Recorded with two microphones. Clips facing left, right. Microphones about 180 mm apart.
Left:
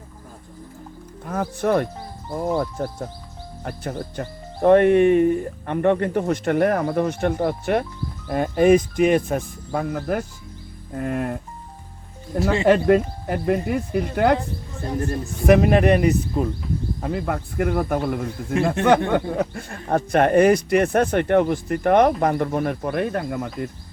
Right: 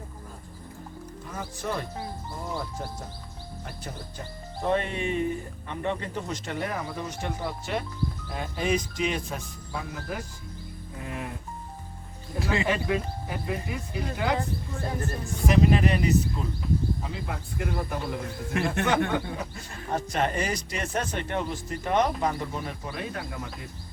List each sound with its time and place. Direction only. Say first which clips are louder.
1.2 s speech: left 12 dB; 60° left (ahead or behind)
12.6 s speech: left 11 dB; 55° left (ahead or behind)
15.4 s speech: left 7 dB; 60° left (ahead or behind)
18.5 s speech: left 6 dB; 35° left (ahead or behind)
19.1 s speech: left 9 dB; 55° left (ahead or behind)